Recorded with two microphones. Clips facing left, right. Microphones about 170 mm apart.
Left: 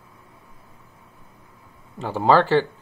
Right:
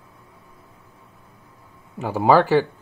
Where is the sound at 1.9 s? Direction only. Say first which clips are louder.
Right 1 dB; 10° right (ahead or behind).